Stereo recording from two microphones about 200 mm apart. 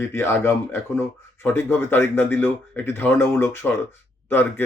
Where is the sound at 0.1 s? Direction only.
10° left (ahead or behind).